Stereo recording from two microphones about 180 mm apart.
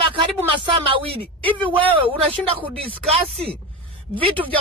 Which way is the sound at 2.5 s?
30° right (ahead or behind).